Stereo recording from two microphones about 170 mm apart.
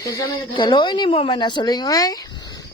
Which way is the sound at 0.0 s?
20° left (ahead or behind).